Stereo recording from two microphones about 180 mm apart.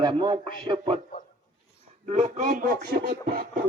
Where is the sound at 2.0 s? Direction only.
40° right (ahead or behind).